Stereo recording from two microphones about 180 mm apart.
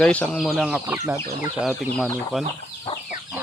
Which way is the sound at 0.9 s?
15° right (ahead or behind).